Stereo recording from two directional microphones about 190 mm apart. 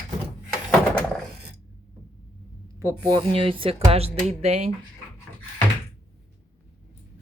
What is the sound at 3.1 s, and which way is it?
Speech, 25° right (ahead or behind).